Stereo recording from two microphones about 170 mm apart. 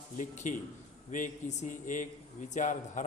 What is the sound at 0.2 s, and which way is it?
A man's voice, 45° left (ahead or behind).